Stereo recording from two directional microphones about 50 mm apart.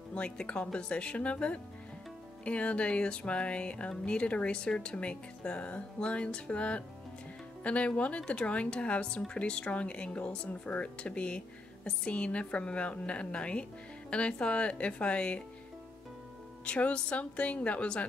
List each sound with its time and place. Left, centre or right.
0.1 s speech: left
16.6 s speech: left